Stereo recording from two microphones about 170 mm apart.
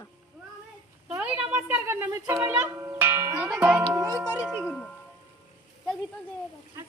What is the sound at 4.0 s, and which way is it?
Music, 20° right (ahead or behind).